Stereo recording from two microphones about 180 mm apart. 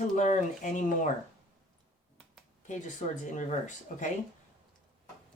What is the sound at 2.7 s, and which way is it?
Speech, 40° left (ahead or behind).